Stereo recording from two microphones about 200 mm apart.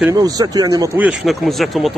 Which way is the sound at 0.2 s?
20° right (ahead or behind).